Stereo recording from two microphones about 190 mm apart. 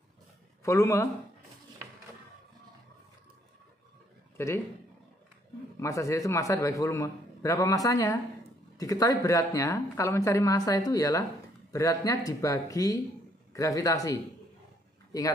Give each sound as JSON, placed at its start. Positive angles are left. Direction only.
{"t": 0.7, "sound": "speech", "side_deg": 15}
{"t": 4.4, "sound": "speech", "side_deg": 15}
{"t": 5.8, "sound": "speech", "side_deg": 15}